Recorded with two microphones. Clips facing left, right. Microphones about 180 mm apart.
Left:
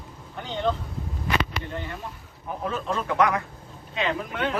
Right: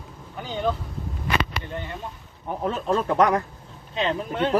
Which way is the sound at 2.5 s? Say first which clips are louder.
Right 4 dB; 35° right (ahead or behind).